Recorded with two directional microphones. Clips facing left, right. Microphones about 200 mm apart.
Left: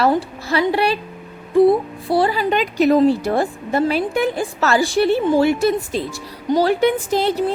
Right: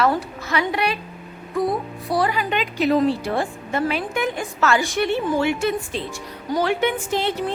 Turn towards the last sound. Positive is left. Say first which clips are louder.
# left 5 dB
turn(degrees=35)  # may be behind; listen again after turning